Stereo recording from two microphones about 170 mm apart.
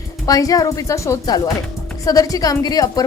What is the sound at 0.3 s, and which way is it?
Speech, 20° left (ahead or behind).